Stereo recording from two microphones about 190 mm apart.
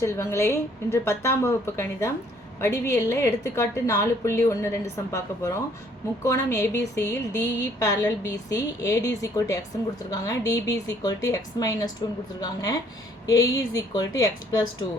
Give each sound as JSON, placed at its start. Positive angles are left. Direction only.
{"t": 0.0, "sound": "a woman's voice", "side_deg": 15}